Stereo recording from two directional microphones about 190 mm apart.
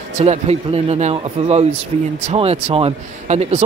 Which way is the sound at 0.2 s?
35° right (ahead or behind).